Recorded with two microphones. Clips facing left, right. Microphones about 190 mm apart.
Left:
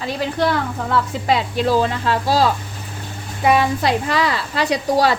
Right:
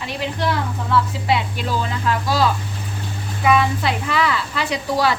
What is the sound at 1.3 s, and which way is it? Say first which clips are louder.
Speech: left 5 dB; 40° left (ahead or behind).